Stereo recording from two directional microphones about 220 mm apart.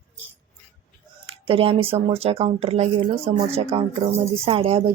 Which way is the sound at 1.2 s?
25° right (ahead or behind).